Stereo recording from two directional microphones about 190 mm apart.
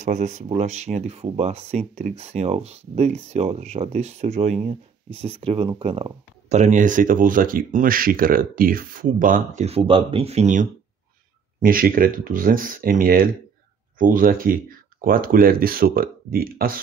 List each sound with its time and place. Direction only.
0.0 s speech: 40° right (ahead or behind)